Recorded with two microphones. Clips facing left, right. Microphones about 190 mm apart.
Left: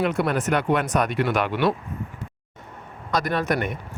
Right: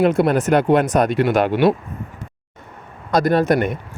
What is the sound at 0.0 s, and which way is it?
Speech, 35° right (ahead or behind).